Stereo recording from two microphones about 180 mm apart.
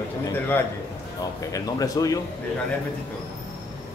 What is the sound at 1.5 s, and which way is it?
Speech, 20° left (ahead or behind).